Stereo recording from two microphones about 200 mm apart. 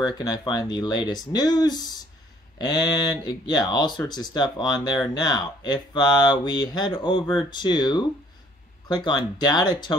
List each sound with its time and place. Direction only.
0.0 s speech: 20° left (ahead or behind)